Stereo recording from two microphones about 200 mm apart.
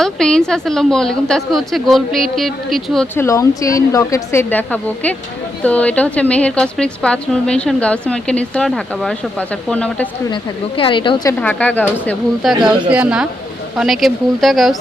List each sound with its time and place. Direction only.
0.0 s a woman's voice: 5° left (ahead or behind)
3.6 s a woman's voice: 15° left (ahead or behind)
10.2 s a woman's voice: 25° left (ahead or behind)
11.3 s a woman's voice: 5° left (ahead or behind)